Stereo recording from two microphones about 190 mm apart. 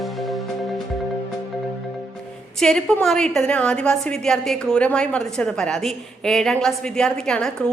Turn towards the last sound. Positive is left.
turn(degrees=5)  # may be behind; listen again after turning